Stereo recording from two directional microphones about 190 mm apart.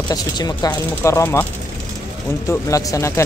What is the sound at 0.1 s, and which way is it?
Speech, 20° left (ahead or behind).